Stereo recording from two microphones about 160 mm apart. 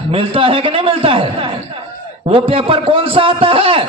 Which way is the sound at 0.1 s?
35° right (ahead or behind).